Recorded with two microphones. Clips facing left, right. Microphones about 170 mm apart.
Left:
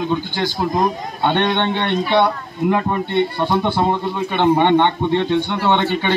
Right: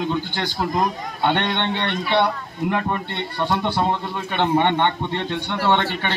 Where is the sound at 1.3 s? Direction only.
15° left (ahead or behind).